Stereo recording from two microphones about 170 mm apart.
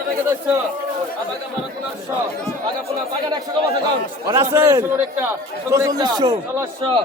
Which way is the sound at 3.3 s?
25° right (ahead or behind).